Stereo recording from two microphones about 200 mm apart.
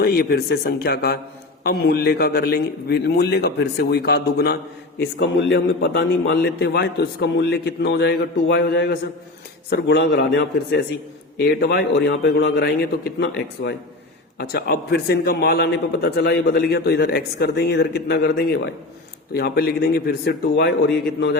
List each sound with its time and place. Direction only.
0.0 s a man's voice: 50° left (ahead or behind)